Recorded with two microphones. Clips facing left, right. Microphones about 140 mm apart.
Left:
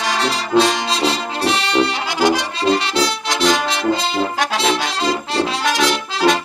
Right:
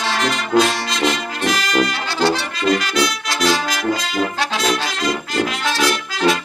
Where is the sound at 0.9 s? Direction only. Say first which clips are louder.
Left 1 dB; 30° left (ahead or behind).